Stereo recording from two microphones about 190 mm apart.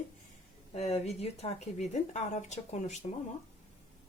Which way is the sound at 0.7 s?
35° left (ahead or behind).